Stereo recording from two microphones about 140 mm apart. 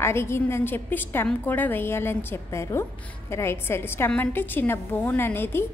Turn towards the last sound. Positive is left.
turn(degrees=15)  # may be behind; listen again after turning